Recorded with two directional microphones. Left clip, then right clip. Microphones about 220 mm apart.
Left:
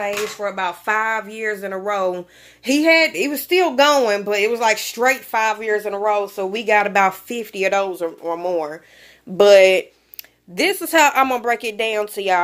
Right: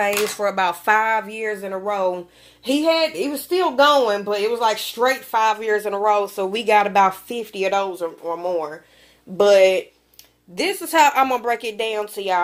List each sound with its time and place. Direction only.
0.0 s speech: 20° right (ahead or behind)
1.3 s speech: 20° left (ahead or behind)
5.6 s speech: 5° left (ahead or behind); by 12.4 s 30° left (ahead or behind)